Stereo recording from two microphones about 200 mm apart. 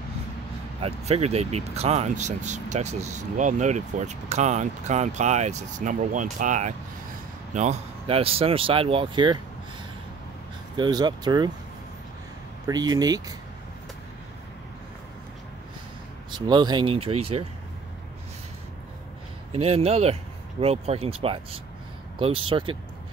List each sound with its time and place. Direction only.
0.7 s speech: 30° right (ahead or behind)
10.8 s speech: 20° right (ahead or behind)
12.6 s speech: 20° right (ahead or behind)
16.3 s speech: 20° right (ahead or behind)
19.5 s speech: 30° right (ahead or behind)